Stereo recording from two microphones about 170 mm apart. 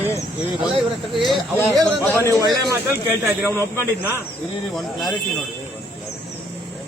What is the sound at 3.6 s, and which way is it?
Speech, 15° left (ahead or behind).